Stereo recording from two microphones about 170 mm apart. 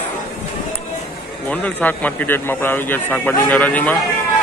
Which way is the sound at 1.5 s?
10° left (ahead or behind).